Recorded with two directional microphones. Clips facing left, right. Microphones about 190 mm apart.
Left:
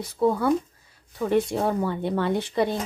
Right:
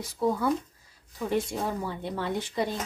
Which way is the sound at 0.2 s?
60° left (ahead or behind).